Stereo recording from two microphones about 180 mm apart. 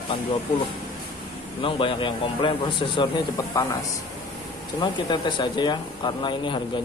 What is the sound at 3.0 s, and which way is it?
Speech, 15° left (ahead or behind).